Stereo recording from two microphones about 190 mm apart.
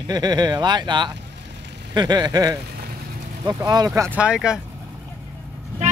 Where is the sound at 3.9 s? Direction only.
10° right (ahead or behind).